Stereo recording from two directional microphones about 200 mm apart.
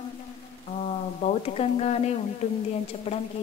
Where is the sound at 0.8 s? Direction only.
30° left (ahead or behind).